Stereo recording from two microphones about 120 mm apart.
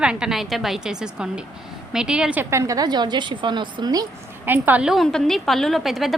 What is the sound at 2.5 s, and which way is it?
A woman's voice, 25° right (ahead or behind).